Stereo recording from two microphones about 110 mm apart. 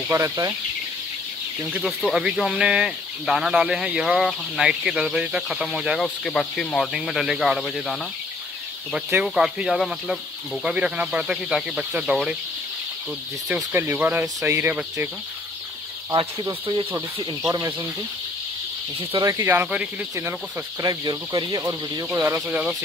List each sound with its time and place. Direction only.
0.1 s speech: 25° right (ahead or behind)
1.6 s speech: 10° right (ahead or behind)
1.9 s speech: centre (ahead or behind)
8.9 s speech: 10° right (ahead or behind)
13.7 s speech: 20° right (ahead or behind)
16.1 s speech: 35° right (ahead or behind)
19.2 s speech: 25° right (ahead or behind)
20.8 s speech: 40° right (ahead or behind)
22.1 s speech: 20° right (ahead or behind)